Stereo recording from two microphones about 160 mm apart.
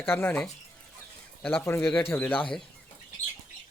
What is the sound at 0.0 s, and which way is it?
Speech, 15° left (ahead or behind).